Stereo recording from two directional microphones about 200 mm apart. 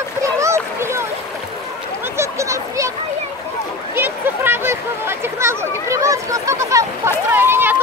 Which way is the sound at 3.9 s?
10° right (ahead or behind).